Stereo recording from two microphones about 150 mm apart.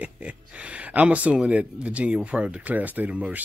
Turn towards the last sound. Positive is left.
turn(degrees=-10)  # may be behind; listen again after turning